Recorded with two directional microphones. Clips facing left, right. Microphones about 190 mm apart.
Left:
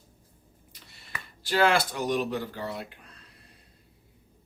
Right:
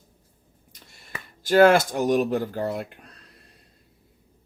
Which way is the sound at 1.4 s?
45° right (ahead or behind).